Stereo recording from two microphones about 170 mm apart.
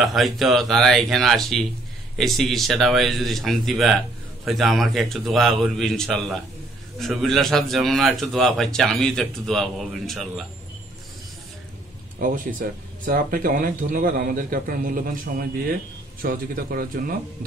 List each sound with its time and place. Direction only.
0.0 s a man's voice: centre (ahead or behind)
12.2 s speech: 55° right (ahead or behind)